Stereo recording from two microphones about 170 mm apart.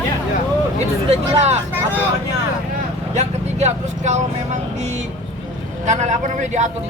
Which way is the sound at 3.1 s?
45° right (ahead or behind).